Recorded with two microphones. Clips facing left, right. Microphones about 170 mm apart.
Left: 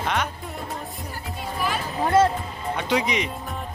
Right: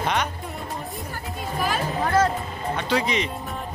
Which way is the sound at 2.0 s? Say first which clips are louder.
Left 3 dB; 25° left (ahead or behind).